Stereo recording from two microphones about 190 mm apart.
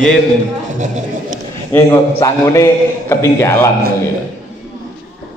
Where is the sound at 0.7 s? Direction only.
40° right (ahead or behind).